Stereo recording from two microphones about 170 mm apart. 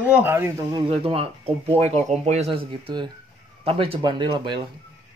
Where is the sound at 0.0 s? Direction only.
10° right (ahead or behind).